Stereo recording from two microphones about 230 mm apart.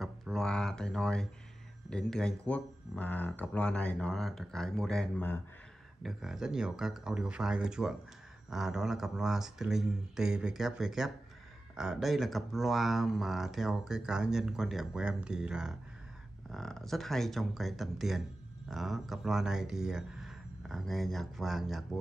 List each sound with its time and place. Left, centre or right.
0.0 s speech: centre